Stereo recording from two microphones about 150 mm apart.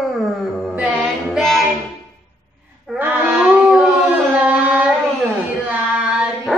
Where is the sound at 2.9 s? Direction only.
10° right (ahead or behind).